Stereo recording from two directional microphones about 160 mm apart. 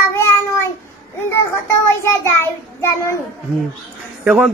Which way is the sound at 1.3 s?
15° left (ahead or behind).